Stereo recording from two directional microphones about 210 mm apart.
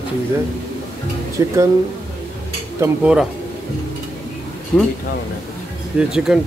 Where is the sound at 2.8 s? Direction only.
5° right (ahead or behind).